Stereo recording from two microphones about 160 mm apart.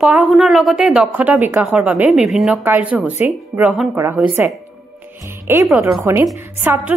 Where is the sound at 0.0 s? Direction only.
5° right (ahead or behind).